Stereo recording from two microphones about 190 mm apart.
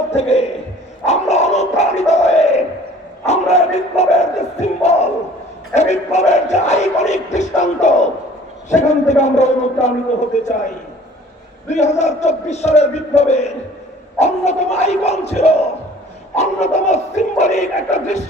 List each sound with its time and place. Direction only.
0.2 s a sound: 35° left (ahead or behind)
1.0 s crowd: 35° left (ahead or behind)
5.7 s a sound: 35° left (ahead or behind)
11.7 s speech: 35° left (ahead or behind)
14.2 s battle cry: 35° left (ahead or behind)
16.3 s speech: 35° left (ahead or behind)